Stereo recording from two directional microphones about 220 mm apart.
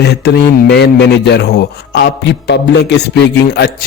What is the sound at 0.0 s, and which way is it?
Speech, 50° left (ahead or behind).